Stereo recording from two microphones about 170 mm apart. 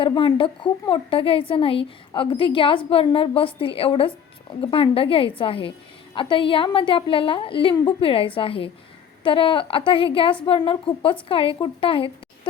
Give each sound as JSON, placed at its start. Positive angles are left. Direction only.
{"t": 0.0, "sound": "a woman's voice", "side_deg": 30}